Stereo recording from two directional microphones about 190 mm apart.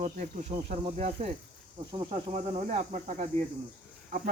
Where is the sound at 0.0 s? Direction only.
35° right (ahead or behind).